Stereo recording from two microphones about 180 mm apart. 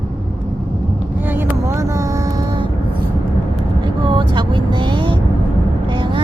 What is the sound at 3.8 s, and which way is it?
Vehicle, 25° right (ahead or behind).